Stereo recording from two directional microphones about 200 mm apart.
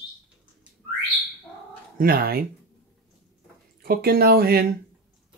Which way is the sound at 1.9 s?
50° right (ahead or behind).